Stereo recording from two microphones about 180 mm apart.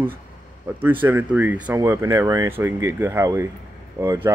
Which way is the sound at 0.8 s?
10° right (ahead or behind).